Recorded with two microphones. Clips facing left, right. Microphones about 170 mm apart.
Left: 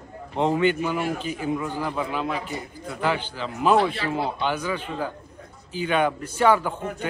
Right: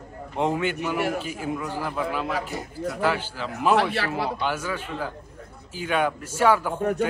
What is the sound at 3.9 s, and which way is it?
Speech, 70° right (ahead or behind).